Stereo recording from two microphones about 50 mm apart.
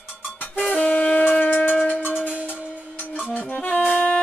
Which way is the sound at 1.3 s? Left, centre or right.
Left.